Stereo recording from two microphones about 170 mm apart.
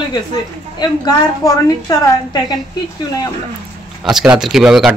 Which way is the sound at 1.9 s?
20° left (ahead or behind).